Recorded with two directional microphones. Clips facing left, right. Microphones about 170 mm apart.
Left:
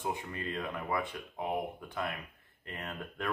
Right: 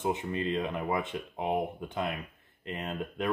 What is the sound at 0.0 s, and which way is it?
Speech, 20° right (ahead or behind).